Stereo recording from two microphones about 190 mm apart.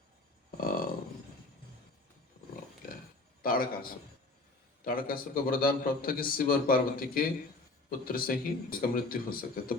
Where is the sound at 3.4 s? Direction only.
50° left (ahead or behind).